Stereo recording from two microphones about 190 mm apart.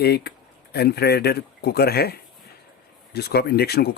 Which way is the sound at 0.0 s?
55° left (ahead or behind).